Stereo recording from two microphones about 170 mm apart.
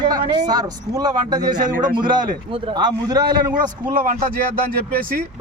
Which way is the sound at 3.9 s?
55° right (ahead or behind).